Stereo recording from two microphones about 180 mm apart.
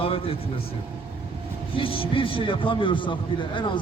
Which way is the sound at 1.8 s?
30° left (ahead or behind).